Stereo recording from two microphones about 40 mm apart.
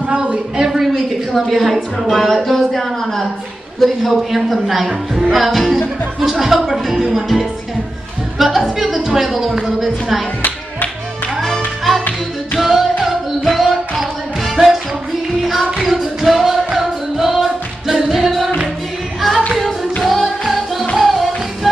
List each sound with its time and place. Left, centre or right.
0.1 s a sound: right
0.6 s a sound: centre
1.3 s speech: centre
8.4 s speech: centre
11.4 s music: centre
12.5 s music: centre
15.8 s music: centre
20.0 s music: centre
21.0 s music of latin america: centre